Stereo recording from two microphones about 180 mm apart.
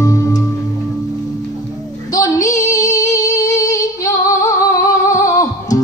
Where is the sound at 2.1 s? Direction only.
15° left (ahead or behind).